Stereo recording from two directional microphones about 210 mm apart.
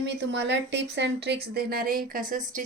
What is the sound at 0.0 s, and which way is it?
Speech, 60° right (ahead or behind).